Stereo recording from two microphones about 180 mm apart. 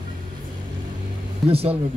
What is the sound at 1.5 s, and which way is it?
Speech, 35° right (ahead or behind).